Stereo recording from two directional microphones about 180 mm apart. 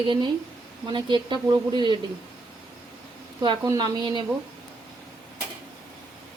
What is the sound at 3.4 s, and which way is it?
Speech, 25° right (ahead or behind).